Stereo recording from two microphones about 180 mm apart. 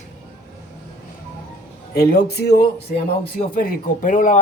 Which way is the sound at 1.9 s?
60° left (ahead or behind).